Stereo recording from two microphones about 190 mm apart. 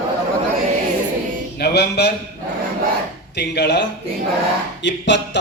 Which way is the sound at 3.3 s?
60° left (ahead or behind).